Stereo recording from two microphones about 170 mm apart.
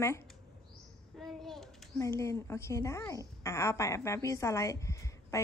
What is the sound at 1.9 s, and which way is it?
A woman's voice, 15° left (ahead or behind).